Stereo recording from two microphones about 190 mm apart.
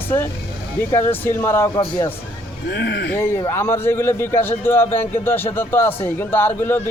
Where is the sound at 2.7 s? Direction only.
60° left (ahead or behind).